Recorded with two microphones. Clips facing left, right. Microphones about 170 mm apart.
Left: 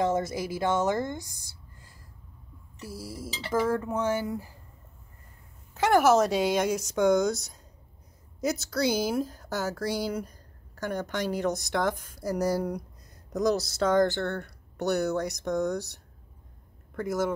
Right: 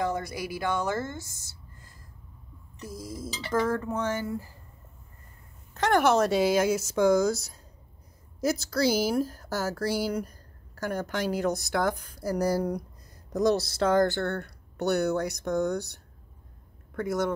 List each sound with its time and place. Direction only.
0.0 s a woman's voice: 25° left (ahead or behind)
5.8 s speech: 5° left (ahead or behind)